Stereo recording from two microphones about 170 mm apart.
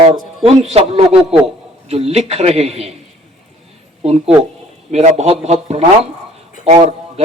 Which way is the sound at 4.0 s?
35° right (ahead or behind).